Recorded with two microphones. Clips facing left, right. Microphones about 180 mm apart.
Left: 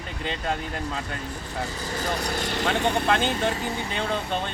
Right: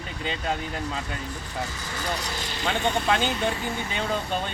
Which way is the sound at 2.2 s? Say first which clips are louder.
Left 6 dB; 60° left (ahead or behind).